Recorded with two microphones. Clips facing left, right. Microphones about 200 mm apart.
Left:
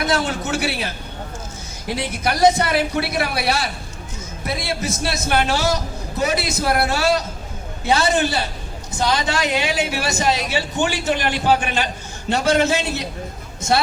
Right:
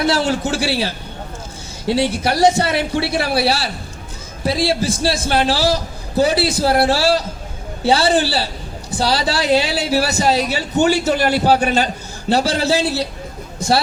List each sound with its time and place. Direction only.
0.0 s a woman's voice: 30° right (ahead or behind)